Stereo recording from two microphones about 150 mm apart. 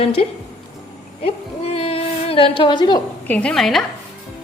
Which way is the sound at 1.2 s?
40° left (ahead or behind).